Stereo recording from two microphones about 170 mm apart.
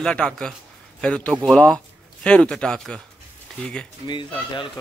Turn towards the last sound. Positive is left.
turn(degrees=30)  # may be behind; listen again after turning